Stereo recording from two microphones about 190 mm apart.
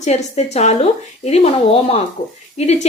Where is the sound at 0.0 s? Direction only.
35° left (ahead or behind).